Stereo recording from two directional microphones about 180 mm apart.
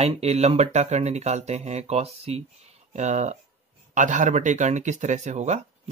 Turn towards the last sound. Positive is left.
turn(degrees=-40)  # may be behind; listen again after turning